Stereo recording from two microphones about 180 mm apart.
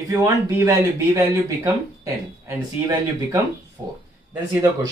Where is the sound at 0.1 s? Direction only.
15° right (ahead or behind).